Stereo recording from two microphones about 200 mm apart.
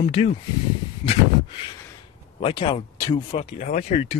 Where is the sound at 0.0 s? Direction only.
25° left (ahead or behind).